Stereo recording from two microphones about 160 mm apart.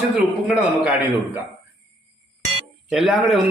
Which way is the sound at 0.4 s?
5° right (ahead or behind).